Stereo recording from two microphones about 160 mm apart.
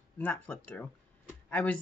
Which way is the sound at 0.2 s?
10° left (ahead or behind).